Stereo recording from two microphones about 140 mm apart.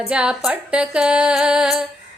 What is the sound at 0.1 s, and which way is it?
Female singing, 5° right (ahead or behind).